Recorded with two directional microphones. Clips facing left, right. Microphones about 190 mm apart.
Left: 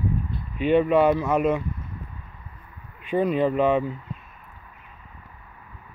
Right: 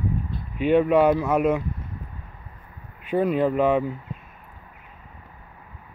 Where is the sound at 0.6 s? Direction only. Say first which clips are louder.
Right 1 dB; 10° right (ahead or behind).